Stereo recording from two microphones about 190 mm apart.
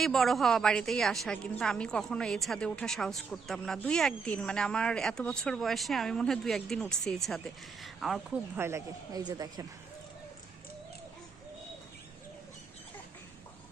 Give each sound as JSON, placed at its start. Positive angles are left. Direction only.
{"t": 0.0, "sound": "a woman's voice", "side_deg": 0}
{"t": 8.5, "sound": "speech", "side_deg": -15}